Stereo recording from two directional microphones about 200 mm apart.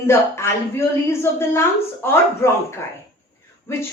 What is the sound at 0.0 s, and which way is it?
A woman's voice, 15° left (ahead or behind).